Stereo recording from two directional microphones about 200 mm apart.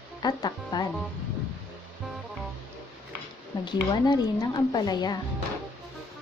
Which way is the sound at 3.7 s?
20° left (ahead or behind).